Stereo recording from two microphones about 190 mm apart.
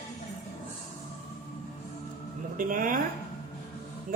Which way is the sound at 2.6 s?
45° right (ahead or behind).